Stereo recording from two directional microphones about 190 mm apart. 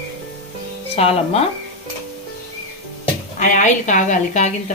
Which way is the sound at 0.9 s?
30° left (ahead or behind).